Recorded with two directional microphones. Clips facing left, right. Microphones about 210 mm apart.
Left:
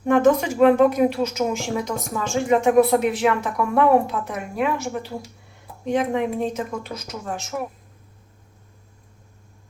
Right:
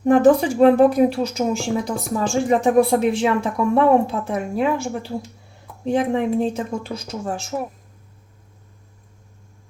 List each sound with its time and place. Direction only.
0.0 s a woman's voice: 35° right (ahead or behind)